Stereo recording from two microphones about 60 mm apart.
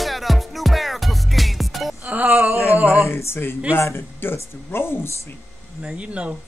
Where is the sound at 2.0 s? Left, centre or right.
Right.